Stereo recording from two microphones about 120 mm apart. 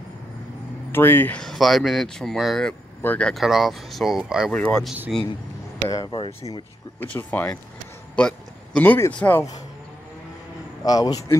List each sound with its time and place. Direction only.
0.9 s speech: 20° left (ahead or behind)
1.4 s speech: centre (ahead or behind)
3.0 s speech: 10° left (ahead or behind); by 4.5 s 5° right (ahead or behind)
4.5 s speech: 10° left (ahead or behind)
5.9 s speech: 35° left (ahead or behind)
7.0 s speech: 15° left (ahead or behind)
10.8 s speech: 30° left (ahead or behind)